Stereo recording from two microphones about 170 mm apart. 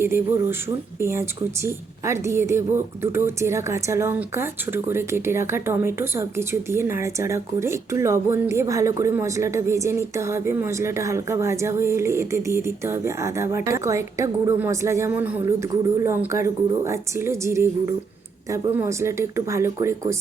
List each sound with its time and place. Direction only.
0.0 s a woman's voice: 15° right (ahead or behind)